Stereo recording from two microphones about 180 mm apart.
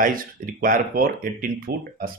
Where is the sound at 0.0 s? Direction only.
50° right (ahead or behind).